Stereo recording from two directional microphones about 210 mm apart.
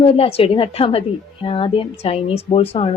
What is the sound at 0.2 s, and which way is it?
A woman's voice, 25° left (ahead or behind).